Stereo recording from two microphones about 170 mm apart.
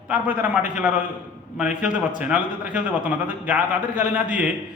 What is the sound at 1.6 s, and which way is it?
A man's voice, 5° right (ahead or behind).